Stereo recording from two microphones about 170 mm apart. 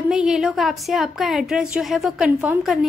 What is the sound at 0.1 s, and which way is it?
A woman's voice, 5° right (ahead or behind).